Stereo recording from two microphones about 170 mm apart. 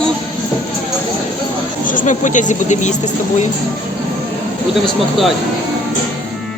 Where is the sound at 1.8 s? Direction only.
50° left (ahead or behind).